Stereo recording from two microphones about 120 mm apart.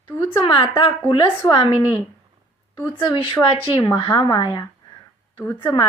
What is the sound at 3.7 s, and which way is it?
Speech, 25° left (ahead or behind).